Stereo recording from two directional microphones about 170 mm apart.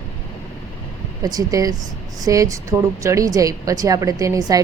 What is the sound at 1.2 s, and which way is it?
A woman's voice, 20° right (ahead or behind).